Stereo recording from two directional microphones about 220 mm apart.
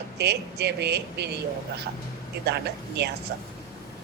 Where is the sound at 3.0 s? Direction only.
50° right (ahead or behind).